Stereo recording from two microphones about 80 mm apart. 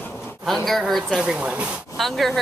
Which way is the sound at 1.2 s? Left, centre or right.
Centre.